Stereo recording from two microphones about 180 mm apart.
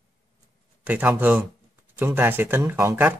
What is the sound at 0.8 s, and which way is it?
Speech, 10° right (ahead or behind).